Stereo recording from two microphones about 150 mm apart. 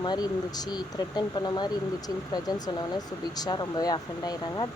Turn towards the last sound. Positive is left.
turn(degrees=25)  # may be behind; listen again after turning